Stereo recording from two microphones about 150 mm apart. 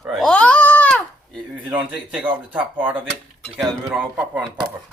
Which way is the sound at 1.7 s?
10° right (ahead or behind).